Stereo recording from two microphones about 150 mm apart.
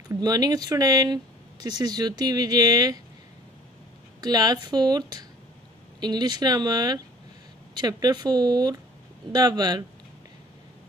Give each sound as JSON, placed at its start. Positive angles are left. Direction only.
{"t": 0.1, "sound": "speech", "side_deg": -25}
{"t": 4.2, "sound": "speech", "side_deg": -25}